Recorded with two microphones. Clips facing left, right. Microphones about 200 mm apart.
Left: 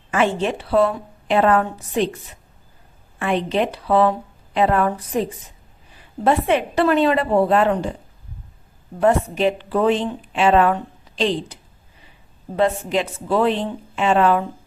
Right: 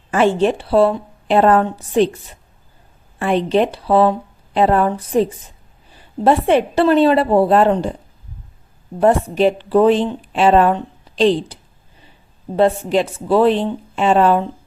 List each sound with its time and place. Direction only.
0.1 s a woman's voice: 35° right (ahead or behind)
3.2 s a woman's voice: 35° right (ahead or behind)
9.0 s a woman's voice: 35° right (ahead or behind)
12.5 s a woman's voice: 35° right (ahead or behind)